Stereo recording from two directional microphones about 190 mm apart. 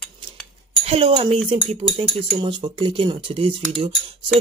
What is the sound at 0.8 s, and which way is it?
Speech, 30° right (ahead or behind).